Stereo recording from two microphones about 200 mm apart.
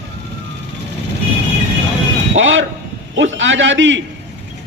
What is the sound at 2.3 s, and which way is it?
A man's voice, 70° right (ahead or behind).